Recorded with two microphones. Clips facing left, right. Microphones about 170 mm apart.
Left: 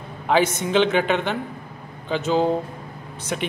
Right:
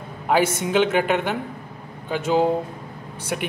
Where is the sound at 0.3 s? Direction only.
10° right (ahead or behind).